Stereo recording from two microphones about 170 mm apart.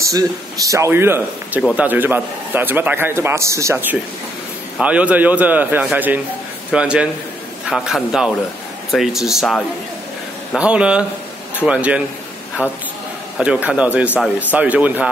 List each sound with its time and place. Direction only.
0.0 s a man's voice: 20° right (ahead or behind)
13.4 s a man's voice: 5° right (ahead or behind)